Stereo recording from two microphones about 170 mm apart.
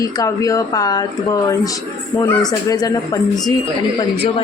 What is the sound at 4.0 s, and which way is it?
Speech, 35° left (ahead or behind).